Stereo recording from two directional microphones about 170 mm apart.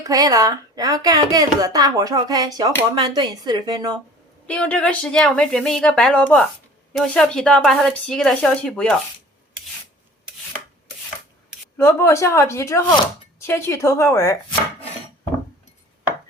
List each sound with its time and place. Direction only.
0.0 s speech: 20° right (ahead or behind)
4.4 s a woman's voice: 5° left (ahead or behind)
11.8 s speech: 15° left (ahead or behind)